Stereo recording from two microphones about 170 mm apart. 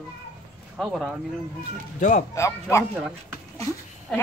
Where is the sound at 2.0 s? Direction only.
50° left (ahead or behind).